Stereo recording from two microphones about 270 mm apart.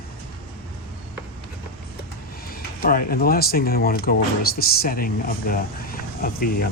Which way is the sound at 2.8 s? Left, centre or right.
Left.